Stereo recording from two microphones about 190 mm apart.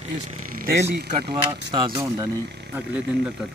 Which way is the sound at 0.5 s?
55° right (ahead or behind).